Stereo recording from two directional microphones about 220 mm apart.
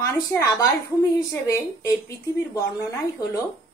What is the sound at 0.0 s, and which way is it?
A woman's voice, 15° left (ahead or behind).